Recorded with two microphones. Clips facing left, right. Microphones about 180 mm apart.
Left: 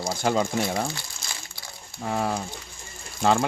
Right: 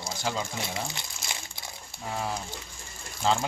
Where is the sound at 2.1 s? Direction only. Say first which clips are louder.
Left 6 dB; 60° left (ahead or behind).